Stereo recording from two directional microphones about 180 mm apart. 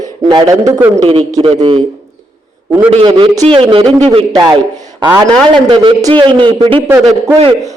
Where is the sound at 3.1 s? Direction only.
20° right (ahead or behind).